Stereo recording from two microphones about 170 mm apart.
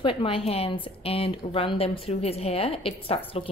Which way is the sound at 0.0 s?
30° left (ahead or behind).